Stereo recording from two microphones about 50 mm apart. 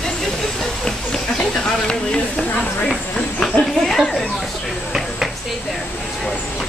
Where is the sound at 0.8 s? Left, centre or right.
Centre.